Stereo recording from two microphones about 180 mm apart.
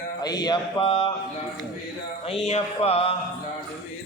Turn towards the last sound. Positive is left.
turn(degrees=35)  # may be behind; listen again after turning